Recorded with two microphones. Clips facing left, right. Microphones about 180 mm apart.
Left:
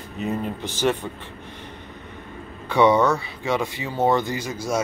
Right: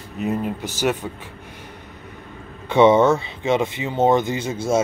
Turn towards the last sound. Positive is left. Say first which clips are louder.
# right 4 dB
turn(degrees=-25)  # may be behind; listen again after turning